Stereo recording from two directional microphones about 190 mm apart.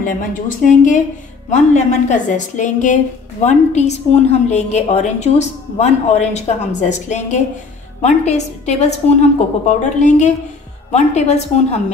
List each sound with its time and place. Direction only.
0.0 s a woman's voice: 45° left (ahead or behind)